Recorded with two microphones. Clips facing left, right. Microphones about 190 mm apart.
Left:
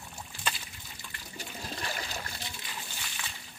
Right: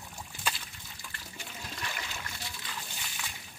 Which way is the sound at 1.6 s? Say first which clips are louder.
Left 3 dB; 35° left (ahead or behind).